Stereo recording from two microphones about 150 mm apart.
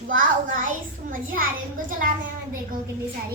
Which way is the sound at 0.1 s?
65° right (ahead or behind).